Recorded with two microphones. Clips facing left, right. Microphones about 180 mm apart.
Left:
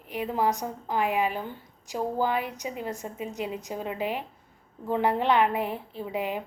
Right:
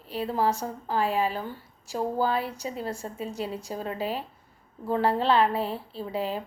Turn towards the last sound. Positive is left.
turn(degrees=15)  # may be behind; listen again after turning